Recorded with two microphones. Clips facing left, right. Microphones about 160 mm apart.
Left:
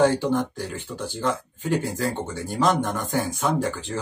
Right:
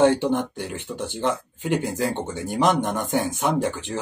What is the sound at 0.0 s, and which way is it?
Speech, 20° right (ahead or behind).